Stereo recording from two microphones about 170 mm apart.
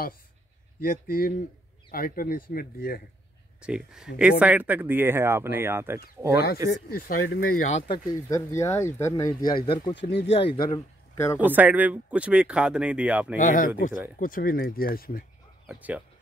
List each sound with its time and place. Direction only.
0.7 s speech: 60° left (ahead or behind)
3.6 s speech: 5° right (ahead or behind)
6.7 s speech: 75° left (ahead or behind)
8.1 s speech: 20° left (ahead or behind)
11.3 s speech: 10° right (ahead or behind)
13.4 s speech: 50° left (ahead or behind)
15.7 s speech: 10° right (ahead or behind)